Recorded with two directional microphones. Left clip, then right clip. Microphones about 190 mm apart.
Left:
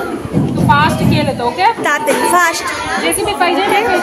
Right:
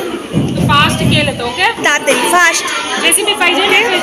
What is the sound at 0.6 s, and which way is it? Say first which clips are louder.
A woman's voice: even; 40° left (ahead or behind).